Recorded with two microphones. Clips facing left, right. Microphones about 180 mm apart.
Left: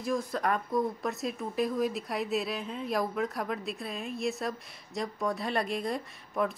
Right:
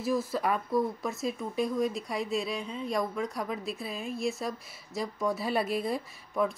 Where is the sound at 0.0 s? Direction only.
5° right (ahead or behind).